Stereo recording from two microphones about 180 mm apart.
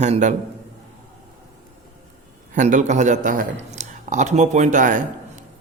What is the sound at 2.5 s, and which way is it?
A man's voice, 45° right (ahead or behind).